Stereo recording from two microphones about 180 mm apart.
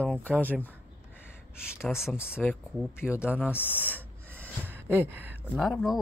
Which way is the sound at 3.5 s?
10° left (ahead or behind).